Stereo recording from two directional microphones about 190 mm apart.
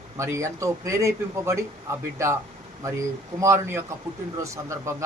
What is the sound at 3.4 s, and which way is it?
Speech, 15° right (ahead or behind).